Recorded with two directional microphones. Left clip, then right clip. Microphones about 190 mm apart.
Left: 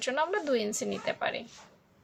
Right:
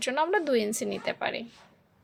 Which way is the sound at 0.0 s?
30° right (ahead or behind).